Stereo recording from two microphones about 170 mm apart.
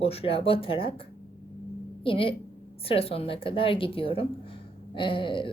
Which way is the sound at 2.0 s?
30° left (ahead or behind).